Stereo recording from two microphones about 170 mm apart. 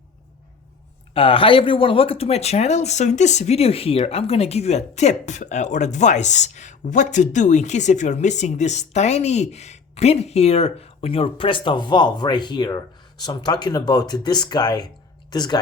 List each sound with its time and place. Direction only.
1.1 s speech: 30° left (ahead or behind)